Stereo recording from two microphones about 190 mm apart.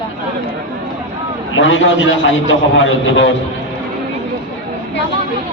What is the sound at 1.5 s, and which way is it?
A man's voice, 80° left.